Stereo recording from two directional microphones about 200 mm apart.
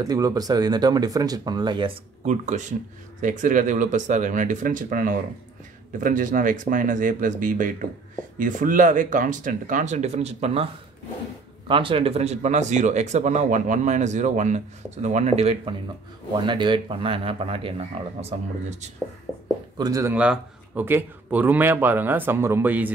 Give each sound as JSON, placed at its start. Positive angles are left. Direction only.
{"t": 0.0, "sound": "speech", "side_deg": -20}
{"t": 2.2, "sound": "speech", "side_deg": -35}
{"t": 19.8, "sound": "speech", "side_deg": -15}